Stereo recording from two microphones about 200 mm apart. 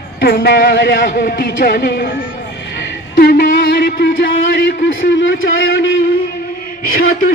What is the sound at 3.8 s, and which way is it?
Speech, 60° left (ahead or behind).